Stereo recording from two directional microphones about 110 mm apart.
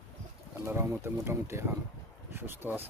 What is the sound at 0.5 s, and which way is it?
Speech, 25° right (ahead or behind).